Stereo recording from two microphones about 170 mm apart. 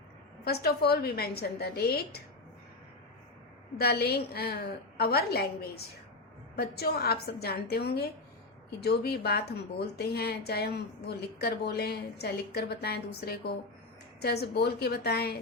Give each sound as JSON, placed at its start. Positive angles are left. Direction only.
{"t": 0.4, "sound": "a woman's voice", "side_deg": 65}
{"t": 3.8, "sound": "a woman's voice", "side_deg": 70}